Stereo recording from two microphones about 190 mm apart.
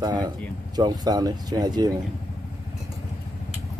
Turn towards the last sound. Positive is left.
turn(degrees=-20)  # may be behind; listen again after turning